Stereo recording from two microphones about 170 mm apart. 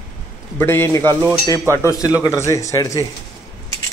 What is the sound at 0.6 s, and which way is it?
Speech, 15° left (ahead or behind).